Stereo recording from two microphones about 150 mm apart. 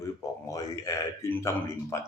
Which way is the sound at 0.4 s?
20° left (ahead or behind).